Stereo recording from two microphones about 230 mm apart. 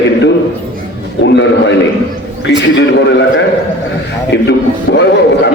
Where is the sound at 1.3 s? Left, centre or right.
Left.